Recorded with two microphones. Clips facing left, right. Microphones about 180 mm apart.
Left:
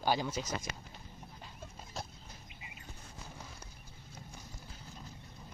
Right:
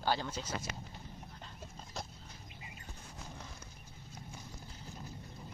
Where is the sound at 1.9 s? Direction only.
Centre (ahead or behind).